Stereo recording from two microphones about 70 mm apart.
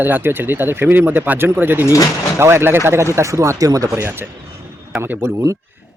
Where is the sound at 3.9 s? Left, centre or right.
Right.